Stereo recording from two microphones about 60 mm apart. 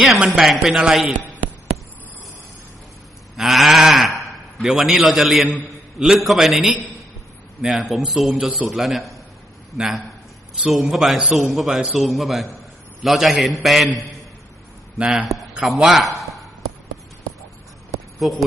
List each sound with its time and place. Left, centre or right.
0.0 s a man's voice: centre
3.3 s livestock: centre
4.6 s a man's voice: centre
10.7 s a man's voice: centre
14.9 s speech: centre
15.6 s a man's voice: centre